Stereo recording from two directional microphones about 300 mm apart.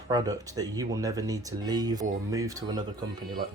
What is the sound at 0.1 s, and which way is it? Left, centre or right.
Speech, centre.